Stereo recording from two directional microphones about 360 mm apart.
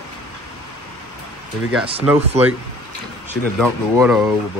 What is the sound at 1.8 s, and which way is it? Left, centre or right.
Speech, centre.